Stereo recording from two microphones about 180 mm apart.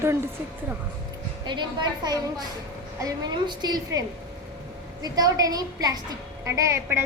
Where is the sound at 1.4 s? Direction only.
25° right (ahead or behind).